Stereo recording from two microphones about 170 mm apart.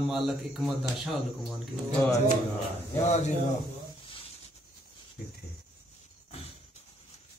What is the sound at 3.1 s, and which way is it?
Speech, 40° left (ahead or behind).